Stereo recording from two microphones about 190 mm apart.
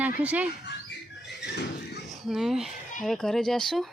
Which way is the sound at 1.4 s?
60° left (ahead or behind).